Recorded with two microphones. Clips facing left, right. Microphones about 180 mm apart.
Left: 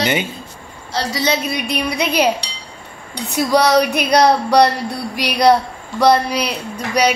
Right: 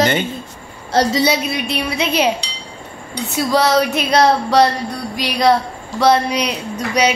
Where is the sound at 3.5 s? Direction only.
15° left (ahead or behind).